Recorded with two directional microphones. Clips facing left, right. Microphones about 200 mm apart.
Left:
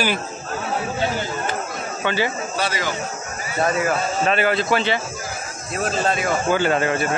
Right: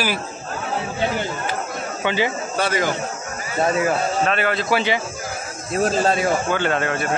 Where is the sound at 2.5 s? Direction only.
50° right (ahead or behind).